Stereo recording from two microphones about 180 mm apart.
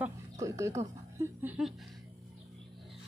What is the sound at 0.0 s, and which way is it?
Speech, 15° right (ahead or behind).